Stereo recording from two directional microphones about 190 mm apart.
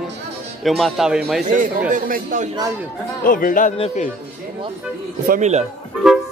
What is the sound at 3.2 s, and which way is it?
Speech, 45° left (ahead or behind).